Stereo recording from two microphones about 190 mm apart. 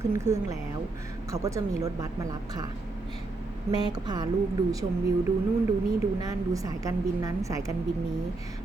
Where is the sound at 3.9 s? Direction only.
20° right (ahead or behind).